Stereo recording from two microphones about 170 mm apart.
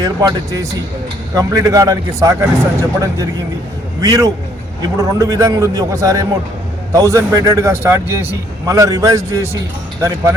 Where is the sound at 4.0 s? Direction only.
20° right (ahead or behind).